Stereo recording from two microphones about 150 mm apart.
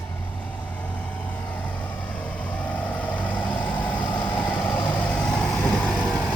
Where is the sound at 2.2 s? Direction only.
10° left (ahead or behind).